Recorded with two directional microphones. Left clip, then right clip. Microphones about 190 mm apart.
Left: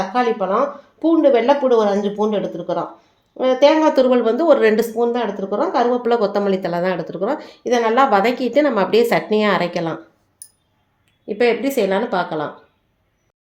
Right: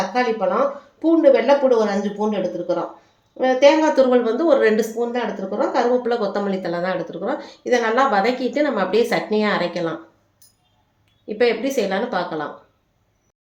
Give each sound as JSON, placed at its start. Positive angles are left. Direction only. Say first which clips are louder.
{"t": 0.1, "sound": "speech", "louder": "left 2 dB", "side_deg": 40}
{"t": 11.3, "sound": "speech", "louder": "left 2 dB", "side_deg": 40}